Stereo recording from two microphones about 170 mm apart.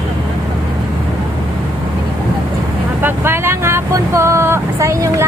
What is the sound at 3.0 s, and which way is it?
Vehicle, 15° right (ahead or behind).